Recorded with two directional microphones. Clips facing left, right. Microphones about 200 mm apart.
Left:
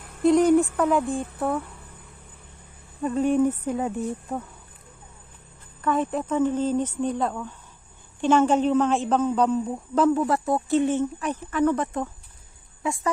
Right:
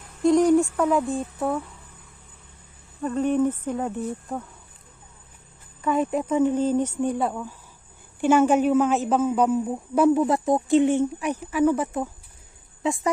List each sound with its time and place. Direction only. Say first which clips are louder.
0.2 s a sound: even; centre (ahead or behind)
0.7 s music: even; centre (ahead or behind)
3.0 s speech: left 1 dB; 10° left (ahead or behind)
5.8 s a woman's voice: right 1 dB; 10° right (ahead or behind)
12.8 s speech: right 3 dB; 20° right (ahead or behind)